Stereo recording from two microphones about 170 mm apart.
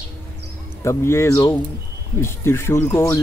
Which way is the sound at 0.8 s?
15° left (ahead or behind).